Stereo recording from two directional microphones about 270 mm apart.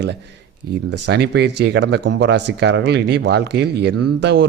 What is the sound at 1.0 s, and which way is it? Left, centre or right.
Speech, right.